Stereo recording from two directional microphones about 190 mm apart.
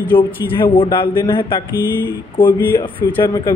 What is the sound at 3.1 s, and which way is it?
Speech, 25° left (ahead or behind).